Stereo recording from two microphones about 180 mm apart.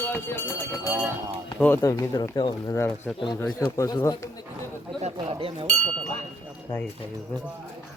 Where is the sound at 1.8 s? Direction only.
20° left (ahead or behind).